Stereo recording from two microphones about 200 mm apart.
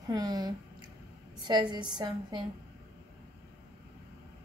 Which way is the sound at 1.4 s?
20° right (ahead or behind).